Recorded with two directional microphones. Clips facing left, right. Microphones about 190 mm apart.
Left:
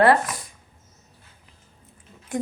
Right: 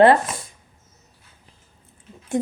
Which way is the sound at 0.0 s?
25° right (ahead or behind).